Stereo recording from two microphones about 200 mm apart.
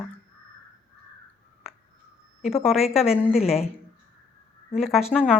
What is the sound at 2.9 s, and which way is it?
Speech, 30° left (ahead or behind).